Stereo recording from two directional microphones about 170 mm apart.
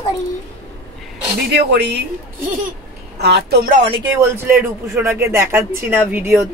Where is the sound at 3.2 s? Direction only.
70° right (ahead or behind).